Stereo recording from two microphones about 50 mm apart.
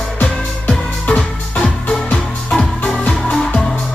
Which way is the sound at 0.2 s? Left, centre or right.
Left.